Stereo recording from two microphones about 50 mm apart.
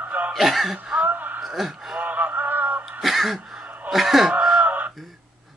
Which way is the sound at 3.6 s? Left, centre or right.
Right.